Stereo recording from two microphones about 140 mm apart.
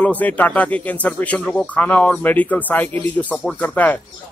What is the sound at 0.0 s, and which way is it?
Speech, 10° left (ahead or behind).